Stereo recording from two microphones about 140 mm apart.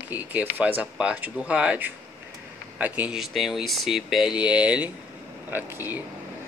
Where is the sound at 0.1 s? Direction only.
10° right (ahead or behind).